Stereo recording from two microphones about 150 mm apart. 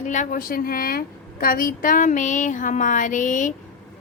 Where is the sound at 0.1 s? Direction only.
60° left (ahead or behind).